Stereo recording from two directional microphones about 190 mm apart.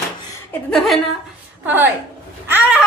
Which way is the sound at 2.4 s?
10° right (ahead or behind).